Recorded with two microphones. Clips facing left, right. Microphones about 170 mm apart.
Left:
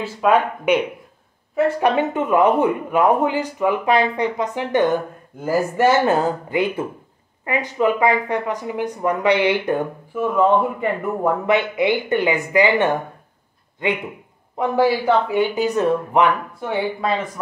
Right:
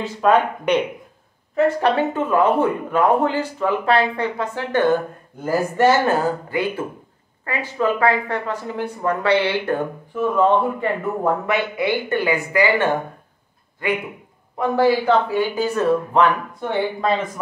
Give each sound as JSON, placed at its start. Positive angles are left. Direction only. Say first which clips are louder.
{"t": 0.0, "sound": "speech", "louder": "even", "side_deg": 5}
{"t": 11.4, "sound": "speech", "louder": "left 3 dB", "side_deg": 20}